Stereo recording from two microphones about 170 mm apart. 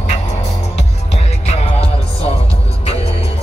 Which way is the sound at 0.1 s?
40° left (ahead or behind).